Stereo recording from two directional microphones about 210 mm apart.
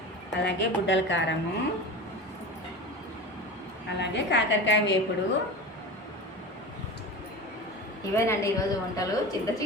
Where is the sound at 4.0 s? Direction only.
55° left (ahead or behind).